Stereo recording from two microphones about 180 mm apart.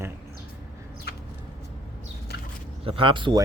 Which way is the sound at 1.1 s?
65° left (ahead or behind).